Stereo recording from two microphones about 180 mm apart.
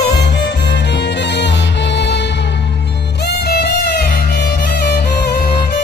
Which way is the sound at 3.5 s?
60° left (ahead or behind).